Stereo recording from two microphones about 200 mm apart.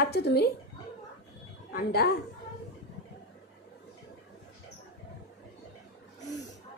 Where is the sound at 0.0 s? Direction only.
55° left (ahead or behind).